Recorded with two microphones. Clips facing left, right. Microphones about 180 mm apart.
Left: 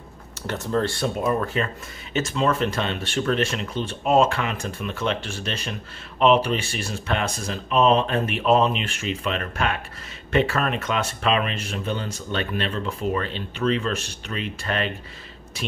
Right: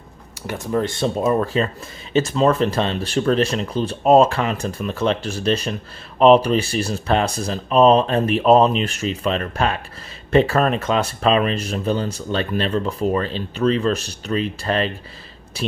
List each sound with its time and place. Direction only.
0.5 s speech: 10° right (ahead or behind)
1.2 s speech: 35° right (ahead or behind)